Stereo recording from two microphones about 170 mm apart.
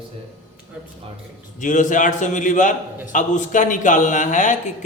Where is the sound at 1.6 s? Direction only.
50° left (ahead or behind).